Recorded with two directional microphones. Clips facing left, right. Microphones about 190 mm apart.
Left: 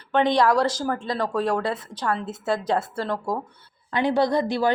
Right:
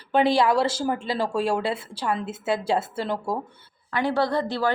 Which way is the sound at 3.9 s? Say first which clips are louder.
Left 2 dB; 15° left (ahead or behind).